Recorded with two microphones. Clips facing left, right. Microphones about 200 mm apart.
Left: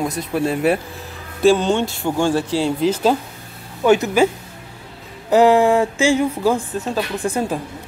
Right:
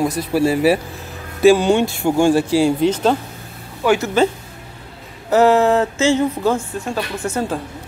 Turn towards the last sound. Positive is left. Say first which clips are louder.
# left 1 dB
turn(degrees=15)  # may be behind; listen again after turning